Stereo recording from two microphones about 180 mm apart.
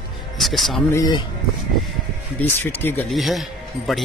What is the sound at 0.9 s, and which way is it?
Speech, 20° left (ahead or behind).